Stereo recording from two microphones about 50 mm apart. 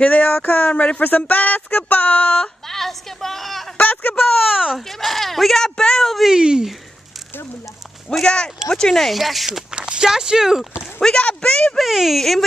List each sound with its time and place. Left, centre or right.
0.0 s speech: left
2.4 s a woman's voice: centre
3.7 s a sound: left
4.5 s a sound: centre
4.7 s speech: centre
6.3 s speech: centre
8.2 s speech: centre
9.8 s speech: right
11.1 s speech: left
11.7 s speech: centre